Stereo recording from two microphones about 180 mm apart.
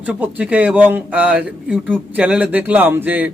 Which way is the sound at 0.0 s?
10° right (ahead or behind).